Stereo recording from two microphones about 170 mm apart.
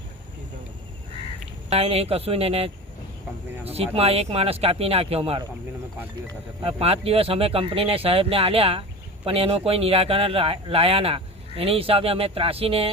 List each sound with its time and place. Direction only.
1.7 s speech: 35° right (ahead or behind)
6.6 s speech: 35° right (ahead or behind)